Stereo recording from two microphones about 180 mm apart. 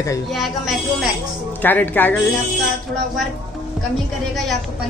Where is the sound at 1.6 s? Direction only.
10° left (ahead or behind).